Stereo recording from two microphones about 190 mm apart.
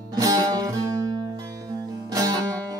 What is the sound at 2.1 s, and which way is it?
Music, 20° right (ahead or behind).